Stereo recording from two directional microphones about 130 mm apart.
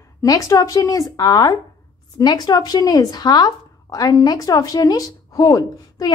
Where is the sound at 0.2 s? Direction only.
25° left (ahead or behind).